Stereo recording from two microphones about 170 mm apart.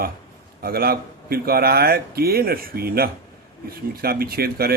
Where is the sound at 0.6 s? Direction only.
65° right (ahead or behind).